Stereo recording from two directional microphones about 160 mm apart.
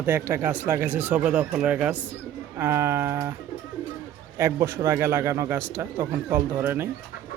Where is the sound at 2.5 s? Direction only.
15° right (ahead or behind).